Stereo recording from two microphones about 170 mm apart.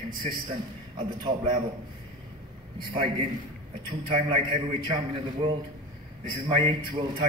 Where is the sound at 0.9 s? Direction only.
30° right (ahead or behind).